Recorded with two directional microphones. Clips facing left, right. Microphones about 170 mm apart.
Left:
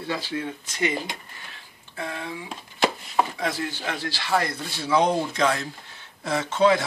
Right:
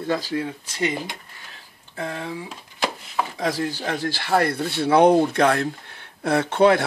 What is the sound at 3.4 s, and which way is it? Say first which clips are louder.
Speech: right 4 dB; 40° right (ahead or behind).